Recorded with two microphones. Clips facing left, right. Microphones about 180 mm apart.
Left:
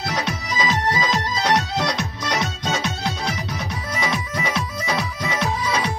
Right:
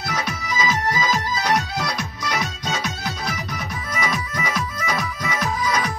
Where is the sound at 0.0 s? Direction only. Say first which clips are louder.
Left 2 dB; 20° left (ahead or behind).